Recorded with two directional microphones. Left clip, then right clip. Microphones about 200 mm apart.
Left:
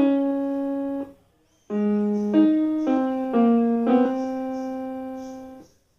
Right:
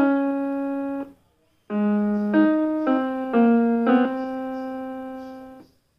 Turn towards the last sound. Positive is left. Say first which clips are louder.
# left 1 dB
turn(degrees=-20)  # may be behind; listen again after turning